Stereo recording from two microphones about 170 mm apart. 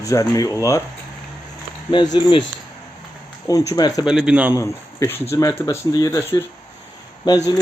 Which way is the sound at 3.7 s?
20° left (ahead or behind).